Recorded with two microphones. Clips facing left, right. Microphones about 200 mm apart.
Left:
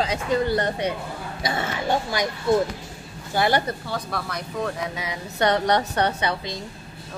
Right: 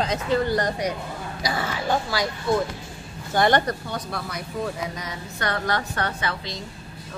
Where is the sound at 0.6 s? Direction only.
30° left (ahead or behind).